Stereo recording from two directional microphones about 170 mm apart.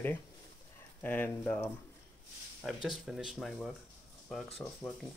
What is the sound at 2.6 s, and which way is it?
Speech, centre (ahead or behind).